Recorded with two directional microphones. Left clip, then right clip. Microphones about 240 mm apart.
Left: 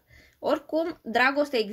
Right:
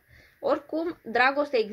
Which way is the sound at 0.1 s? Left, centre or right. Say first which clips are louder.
Even; left.